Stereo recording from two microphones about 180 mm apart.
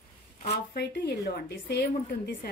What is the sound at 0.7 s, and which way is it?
Speech, 65° left (ahead or behind).